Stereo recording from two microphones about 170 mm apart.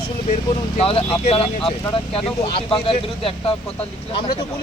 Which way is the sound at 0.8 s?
35° left (ahead or behind).